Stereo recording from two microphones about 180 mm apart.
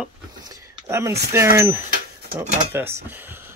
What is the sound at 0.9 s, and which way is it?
Speech, 15° right (ahead or behind).